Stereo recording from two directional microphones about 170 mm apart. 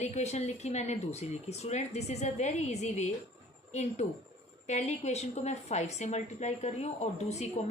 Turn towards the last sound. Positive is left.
turn(degrees=40)  # may be behind; listen again after turning